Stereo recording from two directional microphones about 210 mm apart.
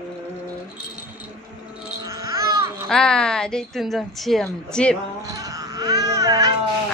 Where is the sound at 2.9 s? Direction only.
5° left (ahead or behind).